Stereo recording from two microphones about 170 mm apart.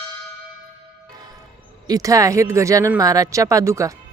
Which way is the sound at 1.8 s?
20° right (ahead or behind).